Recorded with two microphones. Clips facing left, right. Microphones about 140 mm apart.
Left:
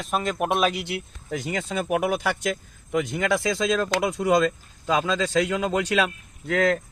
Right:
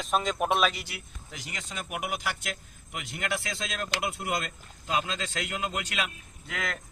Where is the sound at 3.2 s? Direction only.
90° left.